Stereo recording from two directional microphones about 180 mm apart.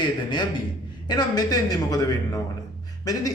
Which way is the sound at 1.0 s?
20° left (ahead or behind).